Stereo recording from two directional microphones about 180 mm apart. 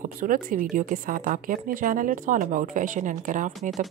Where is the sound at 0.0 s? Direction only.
50° right (ahead or behind).